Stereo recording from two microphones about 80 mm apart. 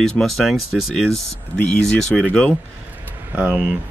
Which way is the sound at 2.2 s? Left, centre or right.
Centre.